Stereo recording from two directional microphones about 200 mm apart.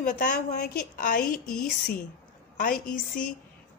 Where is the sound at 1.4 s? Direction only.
5° left (ahead or behind).